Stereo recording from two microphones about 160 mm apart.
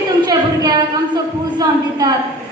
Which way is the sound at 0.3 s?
20° right (ahead or behind).